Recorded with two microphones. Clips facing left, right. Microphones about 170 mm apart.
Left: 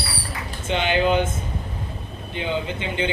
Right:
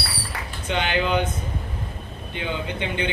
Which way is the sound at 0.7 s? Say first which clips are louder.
Left 3 dB; 25° left (ahead or behind).